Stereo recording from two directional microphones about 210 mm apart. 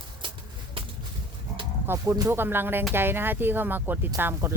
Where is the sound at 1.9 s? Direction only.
15° right (ahead or behind).